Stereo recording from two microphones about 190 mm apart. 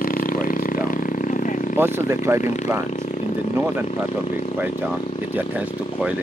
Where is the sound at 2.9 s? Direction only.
40° left (ahead or behind).